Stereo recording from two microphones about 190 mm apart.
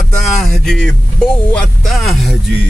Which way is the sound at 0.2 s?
Centre (ahead or behind).